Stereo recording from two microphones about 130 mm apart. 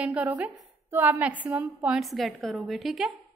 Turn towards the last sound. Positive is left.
turn(degrees=0)  # may be behind; listen again after turning